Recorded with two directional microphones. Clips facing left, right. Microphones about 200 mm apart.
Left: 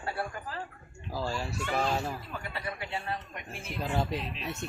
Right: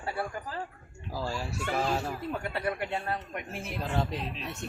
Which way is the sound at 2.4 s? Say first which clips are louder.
Right 6 dB; 55° right (ahead or behind).